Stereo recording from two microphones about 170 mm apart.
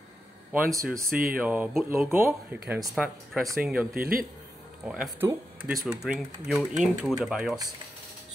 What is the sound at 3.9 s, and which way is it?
Speech, 60° right (ahead or behind).